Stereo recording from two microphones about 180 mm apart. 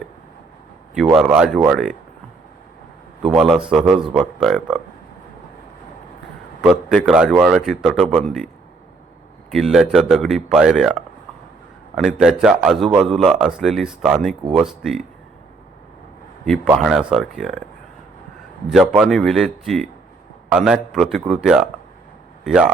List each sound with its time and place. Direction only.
1.1 s speech: 5° right (ahead or behind)
3.2 s speech: centre (ahead or behind)
6.6 s speech: centre (ahead or behind)
9.5 s speech: centre (ahead or behind)
12.2 s speech: centre (ahead or behind)
17.1 s speech: centre (ahead or behind)
18.7 s speech: 5° right (ahead or behind)